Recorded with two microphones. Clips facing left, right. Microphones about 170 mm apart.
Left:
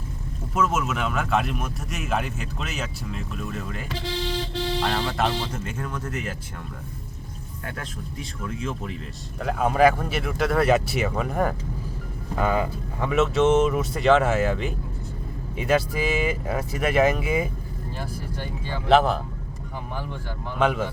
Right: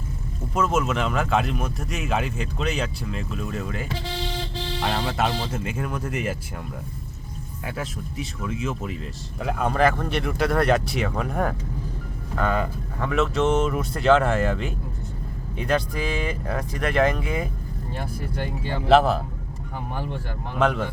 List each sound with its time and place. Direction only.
0.5 s speech: 5° left (ahead or behind)
7.6 s speech: 5° right (ahead or behind)
17.9 s speech: 60° right (ahead or behind)
18.9 s speech: centre (ahead or behind)
20.6 s speech: 5° left (ahead or behind)